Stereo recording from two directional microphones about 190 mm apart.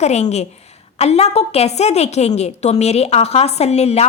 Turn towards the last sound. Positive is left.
turn(degrees=35)  # may be behind; listen again after turning